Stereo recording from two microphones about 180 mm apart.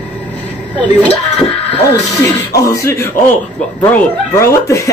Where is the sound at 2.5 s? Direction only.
15° left (ahead or behind).